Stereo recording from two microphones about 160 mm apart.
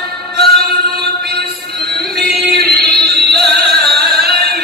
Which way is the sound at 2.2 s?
80° right.